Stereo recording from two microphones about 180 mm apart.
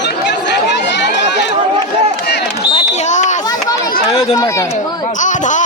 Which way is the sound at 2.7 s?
40° left (ahead or behind).